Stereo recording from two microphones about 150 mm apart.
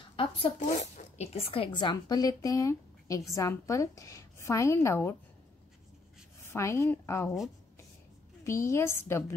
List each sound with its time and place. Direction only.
0.1 s speech: 35° left (ahead or behind)
0.6 s speech: 55° left (ahead or behind); by 5.1 s 15° left (ahead or behind)
6.4 s a woman's voice: 20° left (ahead or behind)
8.5 s a woman's voice: 20° left (ahead or behind)